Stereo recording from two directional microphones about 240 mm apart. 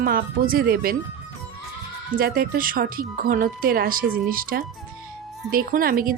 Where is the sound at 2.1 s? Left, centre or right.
Right.